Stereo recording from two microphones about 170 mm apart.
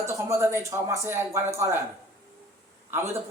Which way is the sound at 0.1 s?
15° right (ahead or behind).